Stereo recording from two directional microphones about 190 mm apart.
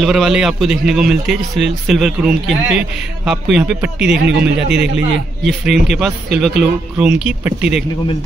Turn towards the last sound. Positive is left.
turn(degrees=-5)  # may be behind; listen again after turning